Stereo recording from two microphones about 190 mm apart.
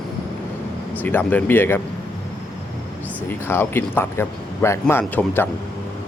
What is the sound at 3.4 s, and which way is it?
Speech, 10° left (ahead or behind).